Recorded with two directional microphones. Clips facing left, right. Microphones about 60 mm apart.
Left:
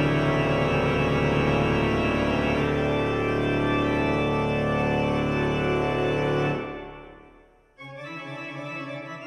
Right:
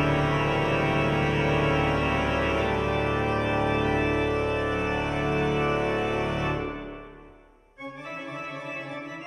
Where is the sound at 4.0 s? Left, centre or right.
Centre.